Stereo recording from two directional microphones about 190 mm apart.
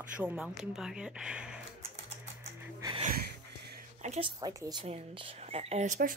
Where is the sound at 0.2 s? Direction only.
5° right (ahead or behind).